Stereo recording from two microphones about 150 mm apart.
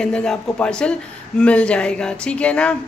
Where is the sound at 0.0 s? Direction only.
5° left (ahead or behind).